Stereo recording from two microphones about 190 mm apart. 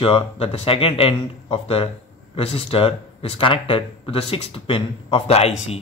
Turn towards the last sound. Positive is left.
turn(degrees=35)  # may be behind; listen again after turning